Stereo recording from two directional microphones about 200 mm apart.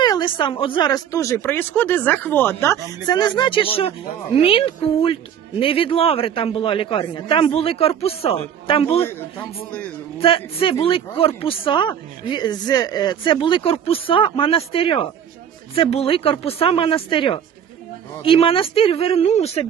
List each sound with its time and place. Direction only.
0.0 s speech: 20° left (ahead or behind)
10.2 s speech: 25° left (ahead or behind)